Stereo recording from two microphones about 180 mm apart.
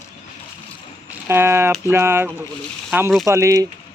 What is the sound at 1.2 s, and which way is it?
Speech, 15° right (ahead or behind).